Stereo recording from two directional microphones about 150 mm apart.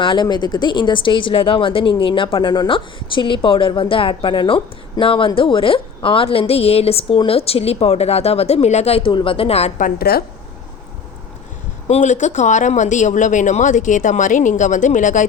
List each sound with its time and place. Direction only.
0.0 s speech: 30° left (ahead or behind)
9.8 s a woman's voice: 90° left
11.9 s speech: 50° left (ahead or behind)